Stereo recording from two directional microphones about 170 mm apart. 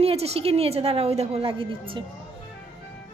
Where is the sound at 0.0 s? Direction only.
35° right (ahead or behind).